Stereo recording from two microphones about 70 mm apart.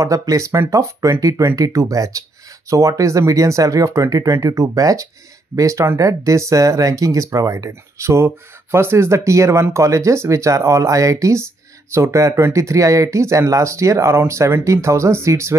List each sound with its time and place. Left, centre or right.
0.0 s speech: right